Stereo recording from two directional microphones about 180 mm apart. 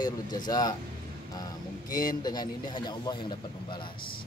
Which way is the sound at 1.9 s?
20° left (ahead or behind).